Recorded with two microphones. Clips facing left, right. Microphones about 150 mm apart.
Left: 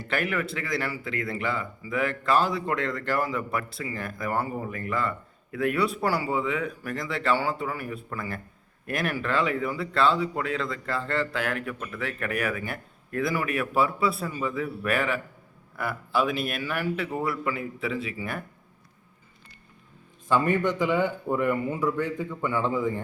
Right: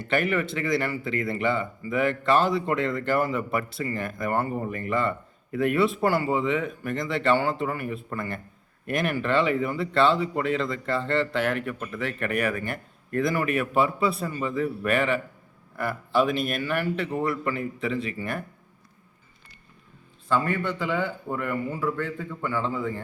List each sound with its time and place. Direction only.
0.0 s speech: centre (ahead or behind)
20.2 s a man's voice: 15° left (ahead or behind)